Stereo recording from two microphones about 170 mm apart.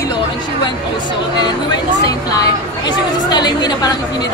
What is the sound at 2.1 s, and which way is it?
A woman's voice, 20° left (ahead or behind).